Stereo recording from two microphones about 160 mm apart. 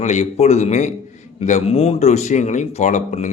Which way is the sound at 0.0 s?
45° left (ahead or behind).